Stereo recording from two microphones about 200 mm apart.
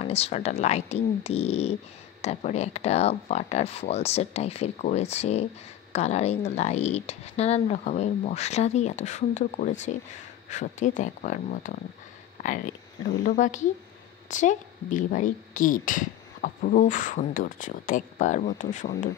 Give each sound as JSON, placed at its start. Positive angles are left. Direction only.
{"t": 0.0, "sound": "speech", "side_deg": 30}